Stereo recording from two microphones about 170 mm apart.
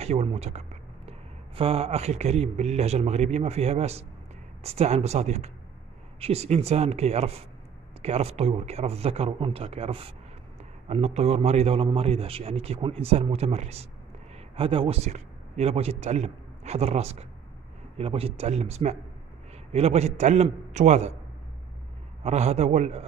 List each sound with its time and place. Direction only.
0.0 s a man's voice: 35° right (ahead or behind)
22.2 s a man's voice: 40° right (ahead or behind)